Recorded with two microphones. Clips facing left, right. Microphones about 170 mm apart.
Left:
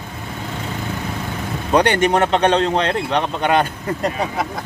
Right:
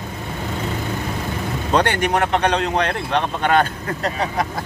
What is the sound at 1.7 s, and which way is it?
Speech, 15° left (ahead or behind).